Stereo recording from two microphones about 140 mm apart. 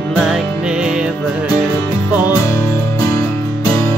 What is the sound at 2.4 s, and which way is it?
Music, 20° left (ahead or behind).